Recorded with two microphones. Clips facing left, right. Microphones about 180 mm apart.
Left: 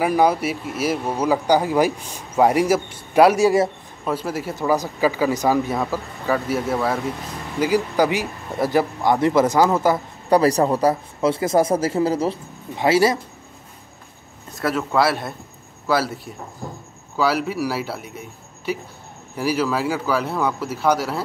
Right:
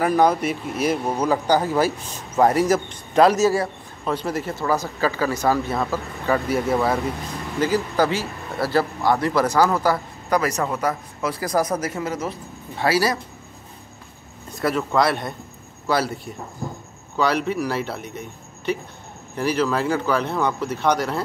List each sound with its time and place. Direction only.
0.0 s speech: 10° left (ahead or behind)
4.0 s speech: 5° left (ahead or behind)
7.6 s a man's voice: 15° left (ahead or behind)
10.3 s a man's voice: 30° left (ahead or behind)
14.6 s a man's voice: 5° left (ahead or behind)
17.2 s a man's voice: 5° left (ahead or behind)